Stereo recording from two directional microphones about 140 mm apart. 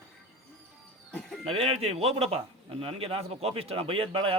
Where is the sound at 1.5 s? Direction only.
45° right (ahead or behind).